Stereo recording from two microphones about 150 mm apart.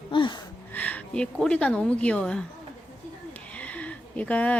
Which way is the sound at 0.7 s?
10° left (ahead or behind).